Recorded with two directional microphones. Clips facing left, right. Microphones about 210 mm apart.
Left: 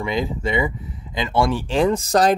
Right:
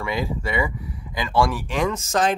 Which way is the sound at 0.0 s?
20° left (ahead or behind).